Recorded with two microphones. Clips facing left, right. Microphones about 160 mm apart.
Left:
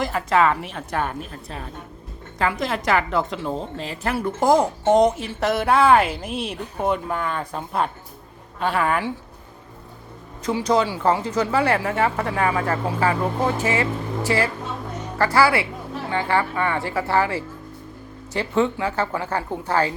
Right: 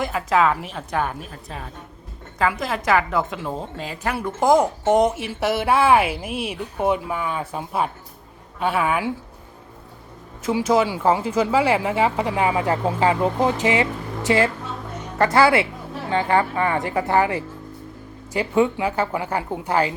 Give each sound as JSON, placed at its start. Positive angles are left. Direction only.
{"t": 0.0, "sound": "a woman's voice", "side_deg": 0}
{"t": 10.4, "sound": "a woman's voice", "side_deg": -5}